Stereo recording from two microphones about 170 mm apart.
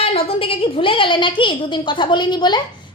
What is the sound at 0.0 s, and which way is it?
A woman's voice, 35° left (ahead or behind).